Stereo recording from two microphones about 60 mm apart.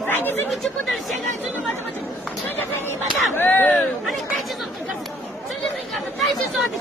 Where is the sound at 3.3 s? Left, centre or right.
Left.